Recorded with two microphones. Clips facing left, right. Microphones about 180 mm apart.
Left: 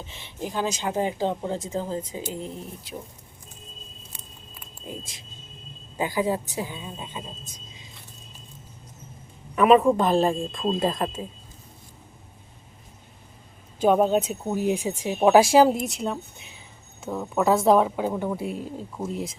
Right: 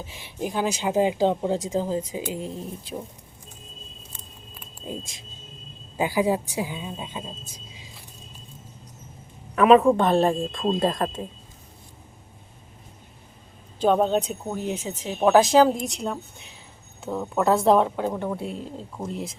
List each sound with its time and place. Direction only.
0.0 s speech: 10° right (ahead or behind)
4.9 s speech: 20° right (ahead or behind)
6.0 s speech: 10° right (ahead or behind)
9.6 s speech: centre (ahead or behind)
13.8 s speech: 5° left (ahead or behind)